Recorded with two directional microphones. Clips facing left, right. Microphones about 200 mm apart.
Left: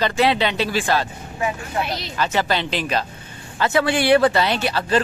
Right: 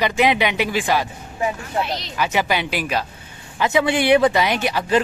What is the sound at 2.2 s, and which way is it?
Speech, 10° right (ahead or behind).